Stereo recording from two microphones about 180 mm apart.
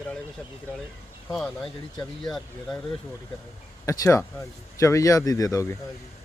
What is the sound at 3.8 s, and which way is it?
Speech, 15° left (ahead or behind).